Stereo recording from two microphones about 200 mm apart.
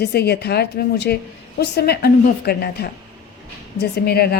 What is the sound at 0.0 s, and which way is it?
A woman's voice, 55° left (ahead or behind).